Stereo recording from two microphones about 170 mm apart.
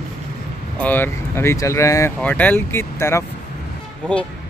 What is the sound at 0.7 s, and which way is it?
Speech, 10° left (ahead or behind).